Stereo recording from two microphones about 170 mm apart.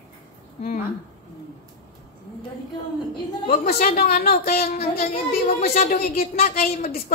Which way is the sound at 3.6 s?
50° left (ahead or behind).